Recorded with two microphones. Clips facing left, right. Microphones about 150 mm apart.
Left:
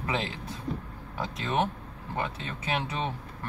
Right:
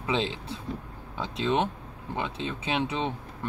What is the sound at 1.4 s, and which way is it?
Speech, 20° right (ahead or behind).